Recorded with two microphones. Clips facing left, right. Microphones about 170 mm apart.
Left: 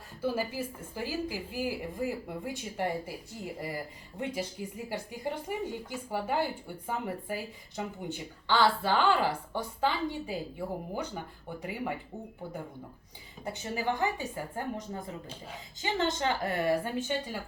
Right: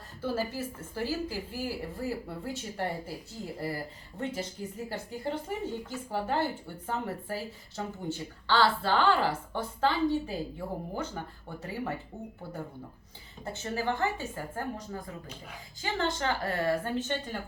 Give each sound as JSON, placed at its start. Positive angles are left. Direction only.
{"t": 0.2, "sound": "speech", "side_deg": 10}
{"t": 13.4, "sound": "speech", "side_deg": 15}